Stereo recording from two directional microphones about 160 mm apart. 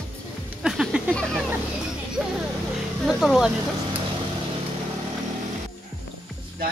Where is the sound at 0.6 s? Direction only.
5° right (ahead or behind).